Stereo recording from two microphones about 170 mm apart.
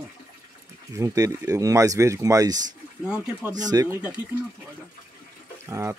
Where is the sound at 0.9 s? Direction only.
20° right (ahead or behind).